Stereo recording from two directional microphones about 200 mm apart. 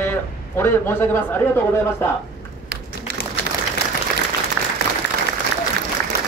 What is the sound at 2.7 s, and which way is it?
Run, 55° right (ahead or behind).